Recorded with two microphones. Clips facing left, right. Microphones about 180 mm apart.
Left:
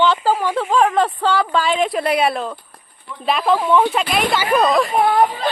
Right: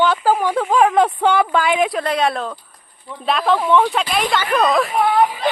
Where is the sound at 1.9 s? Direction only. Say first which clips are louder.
Left 1 dB; 10° left (ahead or behind).